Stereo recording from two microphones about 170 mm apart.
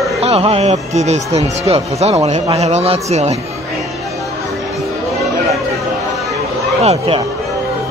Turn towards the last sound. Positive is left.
turn(degrees=-40)  # may be behind; listen again after turning